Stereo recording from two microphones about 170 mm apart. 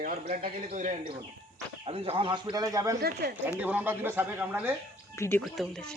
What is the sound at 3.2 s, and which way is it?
Speech, 75° right (ahead or behind).